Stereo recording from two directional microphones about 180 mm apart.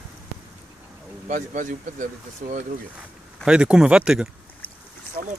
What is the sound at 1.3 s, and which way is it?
Speech, 45° right (ahead or behind).